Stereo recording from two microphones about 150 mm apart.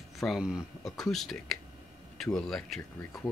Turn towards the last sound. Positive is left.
turn(degrees=5)  # may be behind; listen again after turning